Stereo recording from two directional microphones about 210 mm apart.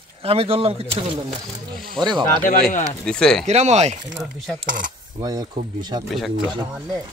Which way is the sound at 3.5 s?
30° right (ahead or behind).